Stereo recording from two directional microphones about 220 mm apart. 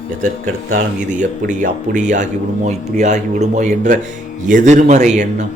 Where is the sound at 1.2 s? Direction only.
35° right (ahead or behind).